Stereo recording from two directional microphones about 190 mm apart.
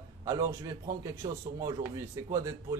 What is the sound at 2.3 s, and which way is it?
Speech, 15° right (ahead or behind).